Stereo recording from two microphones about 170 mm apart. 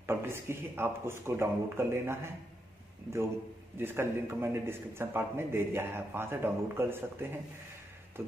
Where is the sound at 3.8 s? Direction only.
15° right (ahead or behind).